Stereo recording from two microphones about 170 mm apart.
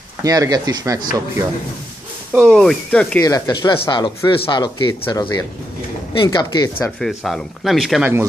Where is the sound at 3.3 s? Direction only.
25° left (ahead or behind).